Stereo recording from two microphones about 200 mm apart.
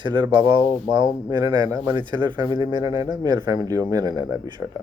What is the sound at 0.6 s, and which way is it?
Speech, 15° left (ahead or behind).